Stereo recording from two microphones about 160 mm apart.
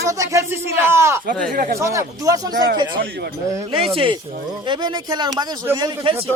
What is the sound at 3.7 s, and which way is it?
Speech, 35° right (ahead or behind).